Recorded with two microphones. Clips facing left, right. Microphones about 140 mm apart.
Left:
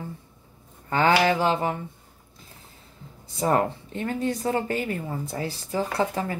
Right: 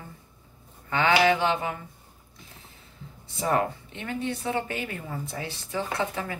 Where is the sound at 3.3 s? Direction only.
35° left (ahead or behind).